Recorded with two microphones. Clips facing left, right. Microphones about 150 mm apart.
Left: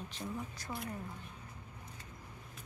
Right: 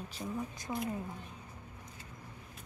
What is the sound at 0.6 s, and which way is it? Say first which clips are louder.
Speech: right 4 dB; 20° right (ahead or behind).